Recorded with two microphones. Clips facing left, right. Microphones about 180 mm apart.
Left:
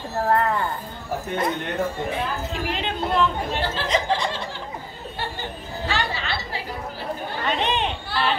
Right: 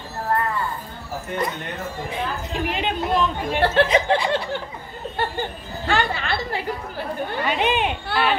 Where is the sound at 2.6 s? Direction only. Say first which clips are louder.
Right 4 dB; 15° right (ahead or behind).